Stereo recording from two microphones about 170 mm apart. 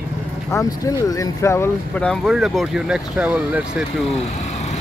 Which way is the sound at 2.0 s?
Centre (ahead or behind).